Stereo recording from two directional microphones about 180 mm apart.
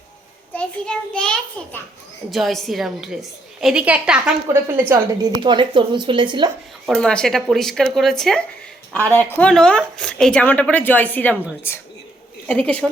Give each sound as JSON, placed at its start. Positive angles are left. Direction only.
{"t": 0.5, "sound": "a woman's voice", "side_deg": 5}
{"t": 5.4, "sound": "speech", "side_deg": -25}
{"t": 6.8, "sound": "a woman's voice", "side_deg": 0}